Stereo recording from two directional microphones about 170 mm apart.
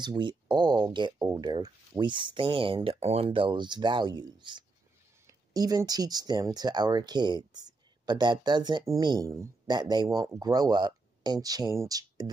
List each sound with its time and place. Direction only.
0.0 s speech: 25° right (ahead or behind)